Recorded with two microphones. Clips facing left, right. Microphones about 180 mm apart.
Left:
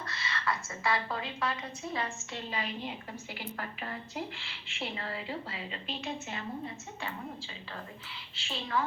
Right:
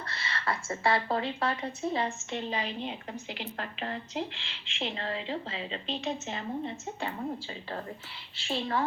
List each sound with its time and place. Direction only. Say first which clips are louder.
0.2 s a woman's voice: right 1 dB; 30° right (ahead or behind)
8.4 s a woman's voice: right 3 dB; 35° right (ahead or behind)